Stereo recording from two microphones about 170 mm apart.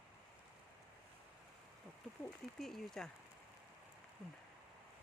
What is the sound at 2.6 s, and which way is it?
Speech, centre (ahead or behind).